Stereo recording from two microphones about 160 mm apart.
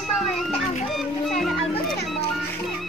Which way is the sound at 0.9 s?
Centre (ahead or behind).